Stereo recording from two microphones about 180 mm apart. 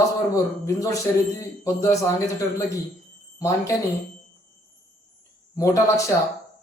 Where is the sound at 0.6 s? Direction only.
20° left (ahead or behind).